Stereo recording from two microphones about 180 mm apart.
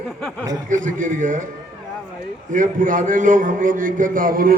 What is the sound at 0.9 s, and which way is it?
Speech, 45° right (ahead or behind).